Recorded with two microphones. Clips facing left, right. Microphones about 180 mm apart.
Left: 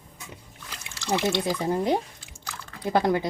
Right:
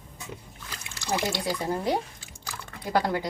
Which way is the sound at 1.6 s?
20° left (ahead or behind).